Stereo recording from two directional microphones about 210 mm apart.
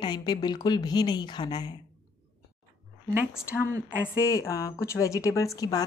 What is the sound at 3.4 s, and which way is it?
A woman's voice, 15° left (ahead or behind).